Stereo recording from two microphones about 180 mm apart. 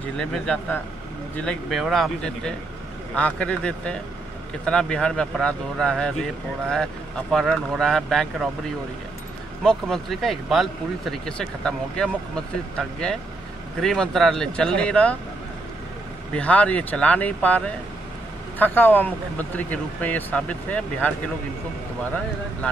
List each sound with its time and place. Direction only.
0.2 s speech: 5° left (ahead or behind)
16.3 s speech: 5° left (ahead or behind)